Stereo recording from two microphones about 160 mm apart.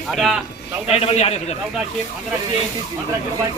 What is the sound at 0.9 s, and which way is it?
Speech, 40° left (ahead or behind).